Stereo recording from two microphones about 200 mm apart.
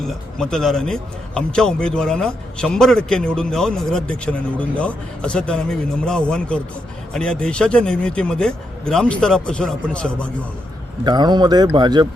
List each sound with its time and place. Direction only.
0.0 s speech: centre (ahead or behind)
11.0 s speech: 20° right (ahead or behind)